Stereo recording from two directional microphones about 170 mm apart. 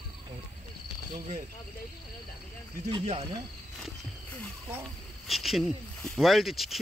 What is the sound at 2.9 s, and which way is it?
Speech, 30° right (ahead or behind).